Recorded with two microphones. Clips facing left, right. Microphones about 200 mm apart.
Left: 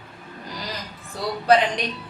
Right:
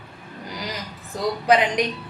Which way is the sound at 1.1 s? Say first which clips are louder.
Right 4 dB; 15° right (ahead or behind).